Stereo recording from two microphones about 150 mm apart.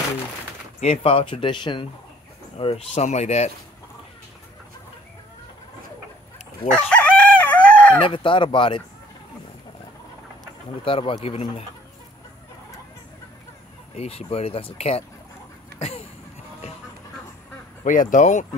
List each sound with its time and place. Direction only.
0.7 s speech: 45° left (ahead or behind)
6.7 s chicken: 5° left (ahead or behind)
8.0 s speech: 35° left (ahead or behind)
10.8 s speech: 35° left (ahead or behind)
13.9 s speech: 40° left (ahead or behind)
15.8 s a sound: 40° left (ahead or behind)
17.8 s speech: 60° left (ahead or behind)